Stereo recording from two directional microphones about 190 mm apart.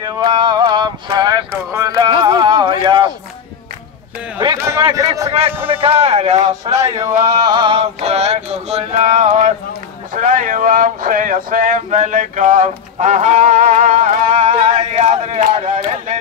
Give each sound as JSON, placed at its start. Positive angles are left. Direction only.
{"t": 0.0, "sound": "music", "side_deg": -25}
{"t": 4.4, "sound": "a sound", "side_deg": -20}
{"t": 4.8, "sound": "speech", "side_deg": -20}
{"t": 5.7, "sound": "male singing", "side_deg": -30}
{"t": 6.7, "sound": "male singing", "side_deg": -15}
{"t": 10.1, "sound": "a sound", "side_deg": -45}